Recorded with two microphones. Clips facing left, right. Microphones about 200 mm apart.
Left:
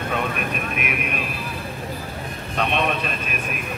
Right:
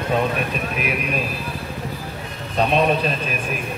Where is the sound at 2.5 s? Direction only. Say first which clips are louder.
Right 5 dB; 35° right (ahead or behind).